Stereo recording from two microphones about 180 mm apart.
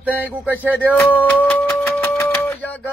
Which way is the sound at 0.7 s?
10° left (ahead or behind).